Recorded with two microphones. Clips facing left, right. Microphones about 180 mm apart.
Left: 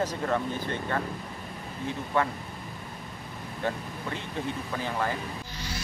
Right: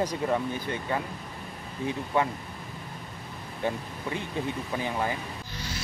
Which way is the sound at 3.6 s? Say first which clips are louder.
Right 1 dB; 15° right (ahead or behind).